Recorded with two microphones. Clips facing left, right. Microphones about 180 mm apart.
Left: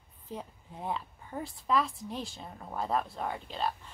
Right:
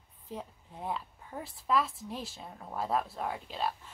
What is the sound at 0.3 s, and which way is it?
A woman's voice, centre (ahead or behind).